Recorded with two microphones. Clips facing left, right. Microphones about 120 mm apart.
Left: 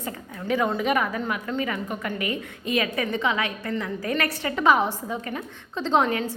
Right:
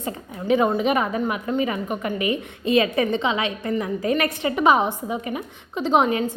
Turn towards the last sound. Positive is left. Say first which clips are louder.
# right 3 dB
turn(degrees=-20)  # may be behind; listen again after turning